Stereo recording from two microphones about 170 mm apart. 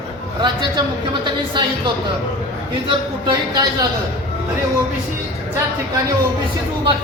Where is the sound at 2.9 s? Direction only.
25° right (ahead or behind).